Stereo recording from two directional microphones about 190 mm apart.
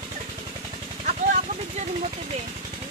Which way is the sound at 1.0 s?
40° right (ahead or behind).